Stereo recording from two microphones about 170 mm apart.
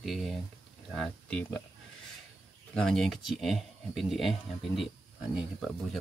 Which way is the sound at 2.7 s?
5° left (ahead or behind).